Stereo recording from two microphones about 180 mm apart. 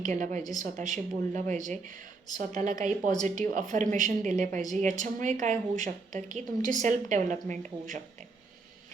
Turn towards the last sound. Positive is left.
turn(degrees=-45)  # may be behind; listen again after turning